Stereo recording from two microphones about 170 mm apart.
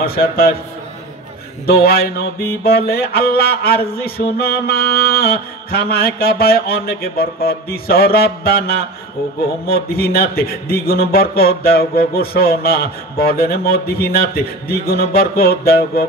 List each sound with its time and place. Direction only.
0.0 s speech: 65° left (ahead or behind)
1.7 s speech: 65° left (ahead or behind)